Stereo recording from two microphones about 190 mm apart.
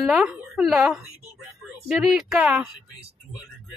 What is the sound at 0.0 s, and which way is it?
Speech, centre (ahead or behind).